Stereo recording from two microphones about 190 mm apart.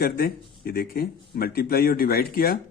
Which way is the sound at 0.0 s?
50° left (ahead or behind).